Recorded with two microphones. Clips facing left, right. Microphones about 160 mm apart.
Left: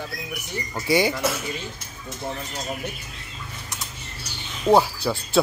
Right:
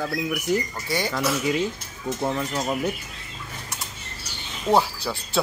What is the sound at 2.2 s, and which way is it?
Speech, 85° right.